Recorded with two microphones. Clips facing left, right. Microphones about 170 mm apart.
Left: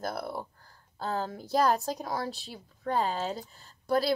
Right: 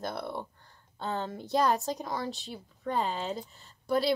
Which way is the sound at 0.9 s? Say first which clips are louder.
Left 1 dB; 35° left (ahead or behind).